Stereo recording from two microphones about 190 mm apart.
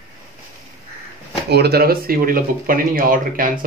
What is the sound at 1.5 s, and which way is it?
Speech, 55° right (ahead or behind).